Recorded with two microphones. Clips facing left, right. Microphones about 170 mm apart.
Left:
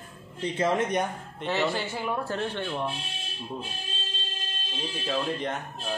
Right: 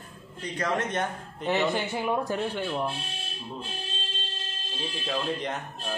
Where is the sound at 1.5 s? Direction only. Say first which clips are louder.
Right 2 dB; 20° right (ahead or behind).